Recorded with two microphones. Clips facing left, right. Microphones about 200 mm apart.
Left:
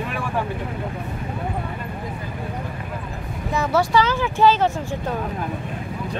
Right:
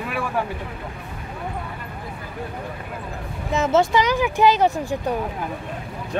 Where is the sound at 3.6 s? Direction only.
25° right (ahead or behind).